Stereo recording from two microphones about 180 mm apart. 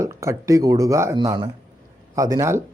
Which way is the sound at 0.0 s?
15° right (ahead or behind).